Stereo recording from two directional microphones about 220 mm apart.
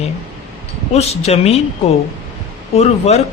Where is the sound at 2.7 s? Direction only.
30° left (ahead or behind).